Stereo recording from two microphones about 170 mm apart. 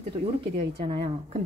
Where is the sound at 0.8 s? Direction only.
30° right (ahead or behind).